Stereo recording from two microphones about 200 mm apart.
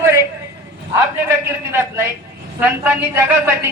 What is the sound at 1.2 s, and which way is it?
A man's voice, 10° right (ahead or behind).